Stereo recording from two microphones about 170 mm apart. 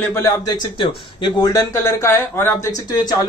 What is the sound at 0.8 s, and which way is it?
Speech, 25° left (ahead or behind).